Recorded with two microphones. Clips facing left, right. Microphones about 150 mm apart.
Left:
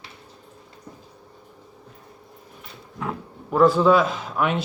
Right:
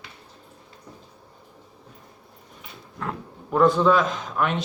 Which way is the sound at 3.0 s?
Centre (ahead or behind).